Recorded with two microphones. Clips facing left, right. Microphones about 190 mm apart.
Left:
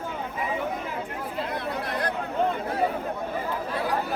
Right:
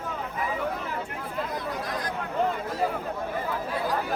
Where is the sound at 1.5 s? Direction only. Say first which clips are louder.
Left 2 dB; 65° left (ahead or behind).